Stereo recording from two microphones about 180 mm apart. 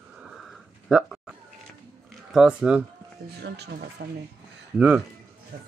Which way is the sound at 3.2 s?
65° right (ahead or behind).